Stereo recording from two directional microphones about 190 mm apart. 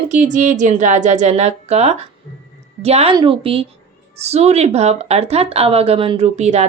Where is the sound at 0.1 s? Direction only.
40° right (ahead or behind).